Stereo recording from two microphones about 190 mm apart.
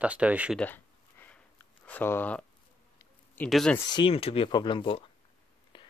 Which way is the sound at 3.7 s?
25° left (ahead or behind).